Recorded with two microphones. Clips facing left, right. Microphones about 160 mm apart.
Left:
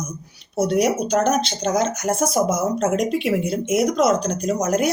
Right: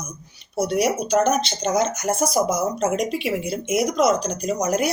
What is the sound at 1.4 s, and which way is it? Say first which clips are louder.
Speech: left 1 dB; 5° right (ahead or behind).